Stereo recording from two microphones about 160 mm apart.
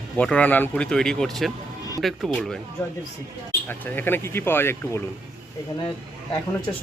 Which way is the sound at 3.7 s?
10° left (ahead or behind).